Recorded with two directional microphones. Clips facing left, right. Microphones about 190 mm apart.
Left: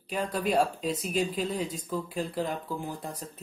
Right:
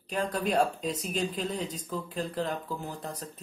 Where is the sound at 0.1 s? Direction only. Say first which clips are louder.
Left 1 dB; 5° left (ahead or behind).